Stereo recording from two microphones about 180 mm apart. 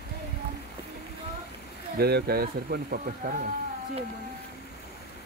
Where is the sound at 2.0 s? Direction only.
60° right (ahead or behind).